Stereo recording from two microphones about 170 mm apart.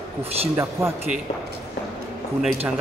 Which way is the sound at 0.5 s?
15° right (ahead or behind).